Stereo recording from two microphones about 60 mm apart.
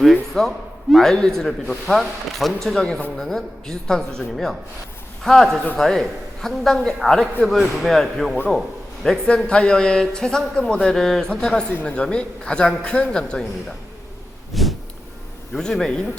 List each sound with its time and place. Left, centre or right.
0.0 s a man's voice: centre
9.0 s a man's voice: centre
14.5 s a sound: centre
15.5 s a man's voice: centre